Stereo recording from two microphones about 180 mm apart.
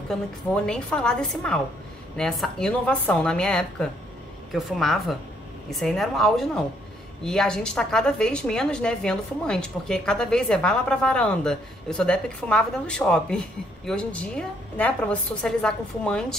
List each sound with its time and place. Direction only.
0.1 s a woman's voice: 5° left (ahead or behind)